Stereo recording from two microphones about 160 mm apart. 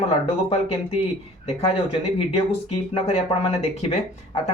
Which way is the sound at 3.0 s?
40° left (ahead or behind).